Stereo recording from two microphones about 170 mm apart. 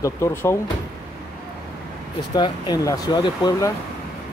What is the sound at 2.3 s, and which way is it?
Speech, 25° left (ahead or behind).